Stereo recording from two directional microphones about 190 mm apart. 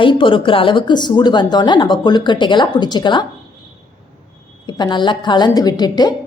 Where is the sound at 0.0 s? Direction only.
25° left (ahead or behind).